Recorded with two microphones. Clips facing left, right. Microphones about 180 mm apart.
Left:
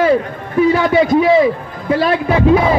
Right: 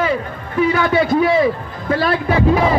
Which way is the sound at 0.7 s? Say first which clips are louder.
Left 3 dB; 20° left (ahead or behind).